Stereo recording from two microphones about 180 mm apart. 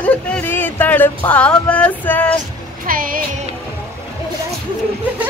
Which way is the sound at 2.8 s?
50° right (ahead or behind).